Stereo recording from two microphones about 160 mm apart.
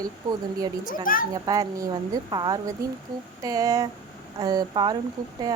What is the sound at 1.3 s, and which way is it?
Speech, 25° right (ahead or behind).